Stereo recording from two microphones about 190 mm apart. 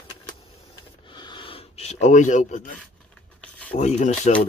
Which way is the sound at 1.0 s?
25° left (ahead or behind).